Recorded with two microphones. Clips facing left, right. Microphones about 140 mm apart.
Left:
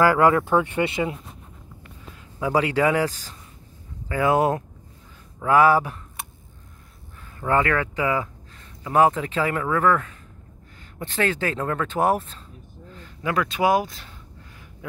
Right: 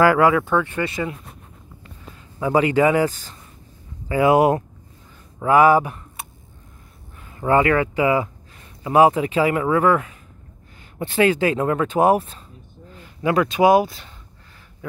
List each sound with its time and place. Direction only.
0.6 s speech: 20° left (ahead or behind)
2.3 s speech: centre (ahead or behind)
7.3 s speech: 10° right (ahead or behind)